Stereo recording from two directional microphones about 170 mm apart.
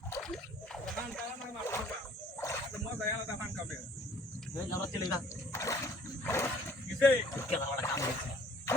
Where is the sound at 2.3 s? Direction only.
15° left (ahead or behind).